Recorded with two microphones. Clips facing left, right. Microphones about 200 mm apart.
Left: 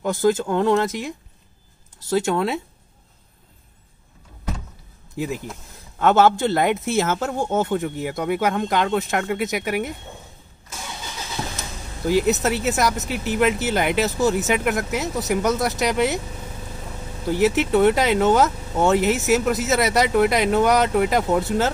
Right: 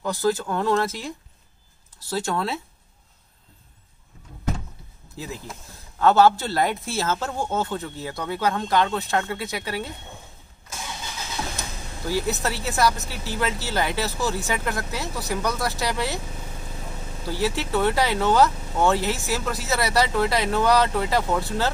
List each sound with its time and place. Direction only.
0.0 s speech: 20° left (ahead or behind)
5.1 s speech: 15° left (ahead or behind)
12.1 s speech: 20° left (ahead or behind)
17.3 s speech: 20° left (ahead or behind)